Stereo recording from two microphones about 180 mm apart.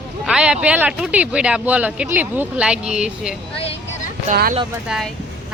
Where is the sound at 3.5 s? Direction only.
35° left (ahead or behind).